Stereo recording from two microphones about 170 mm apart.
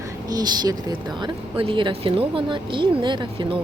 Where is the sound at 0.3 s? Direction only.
25° right (ahead or behind).